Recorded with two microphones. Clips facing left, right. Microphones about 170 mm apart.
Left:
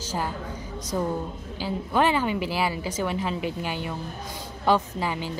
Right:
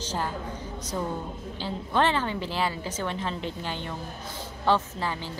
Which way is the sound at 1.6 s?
10° left (ahead or behind).